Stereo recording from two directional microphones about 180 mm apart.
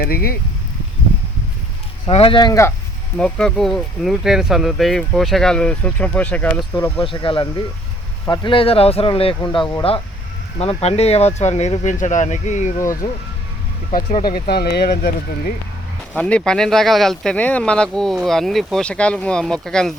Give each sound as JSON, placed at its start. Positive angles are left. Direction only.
{"t": 0.0, "sound": "speech", "side_deg": 55}
{"t": 2.0, "sound": "speech", "side_deg": 30}
{"t": 3.2, "sound": "speech", "side_deg": 5}
{"t": 7.0, "sound": "speech", "side_deg": 30}
{"t": 13.9, "sound": "speech", "side_deg": 50}
{"t": 16.1, "sound": "speech", "side_deg": 5}